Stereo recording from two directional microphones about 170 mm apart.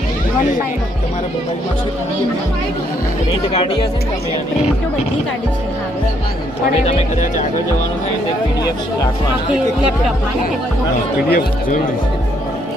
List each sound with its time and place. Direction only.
3.5 s speech: 30° left (ahead or behind)
6.8 s speech: 45° left (ahead or behind)
11.3 s speech: 55° left (ahead or behind)